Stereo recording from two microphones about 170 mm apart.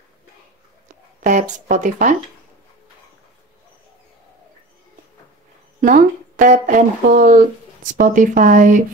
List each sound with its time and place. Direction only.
1.2 s speech: 45° right (ahead or behind)
5.8 s speech: 50° right (ahead or behind)